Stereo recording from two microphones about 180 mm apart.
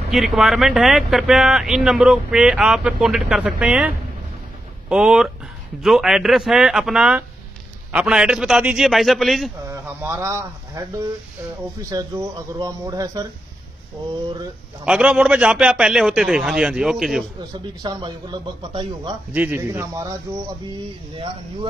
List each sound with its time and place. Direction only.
0.1 s speech: centre (ahead or behind)
9.7 s speech: 10° right (ahead or behind)
11.9 s speech: 20° right (ahead or behind)
14.9 s speech: 5° right (ahead or behind)
17.8 s speech: 25° right (ahead or behind)
19.3 s speech: 10° right (ahead or behind)